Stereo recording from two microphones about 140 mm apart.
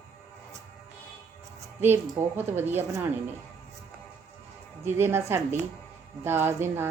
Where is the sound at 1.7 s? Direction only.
15° right (ahead or behind).